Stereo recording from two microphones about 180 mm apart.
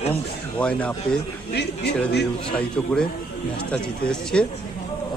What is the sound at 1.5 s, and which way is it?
Speech, 70° left (ahead or behind).